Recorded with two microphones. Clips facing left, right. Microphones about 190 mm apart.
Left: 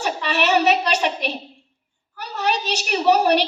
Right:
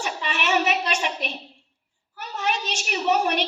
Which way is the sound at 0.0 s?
35° left (ahead or behind).